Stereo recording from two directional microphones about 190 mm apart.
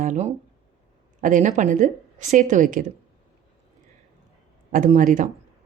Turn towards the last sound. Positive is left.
turn(degrees=-45)  # may be behind; listen again after turning